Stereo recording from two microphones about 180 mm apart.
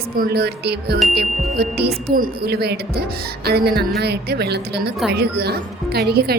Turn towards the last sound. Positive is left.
turn(degrees=-60)  # may be behind; listen again after turning